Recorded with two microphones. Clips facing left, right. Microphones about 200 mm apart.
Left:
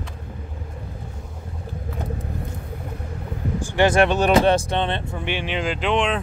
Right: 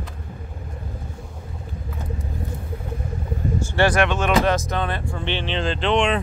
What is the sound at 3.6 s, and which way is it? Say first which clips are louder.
Vehicle: left 1 dB; 15° left (ahead or behind).